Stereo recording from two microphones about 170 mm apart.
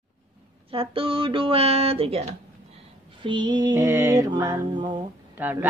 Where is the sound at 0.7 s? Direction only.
30° right (ahead or behind).